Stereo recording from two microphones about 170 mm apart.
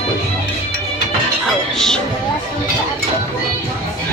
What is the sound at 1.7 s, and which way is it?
Music, 5° left (ahead or behind).